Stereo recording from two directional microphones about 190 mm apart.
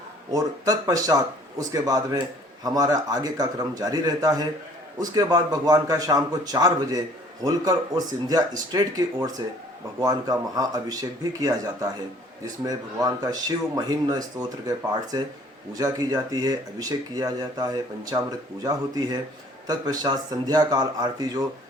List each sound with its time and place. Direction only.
0.3 s a man's voice: 20° right (ahead or behind)